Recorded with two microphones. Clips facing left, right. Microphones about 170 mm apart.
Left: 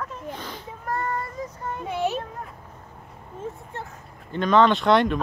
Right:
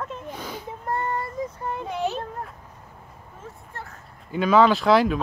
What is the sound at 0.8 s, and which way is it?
Child singing, 25° right (ahead or behind).